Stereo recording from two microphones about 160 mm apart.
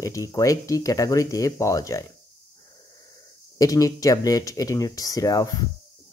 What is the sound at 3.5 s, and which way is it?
Speech, 20° left (ahead or behind).